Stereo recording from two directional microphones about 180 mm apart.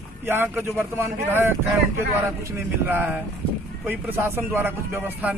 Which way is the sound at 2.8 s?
10° right (ahead or behind).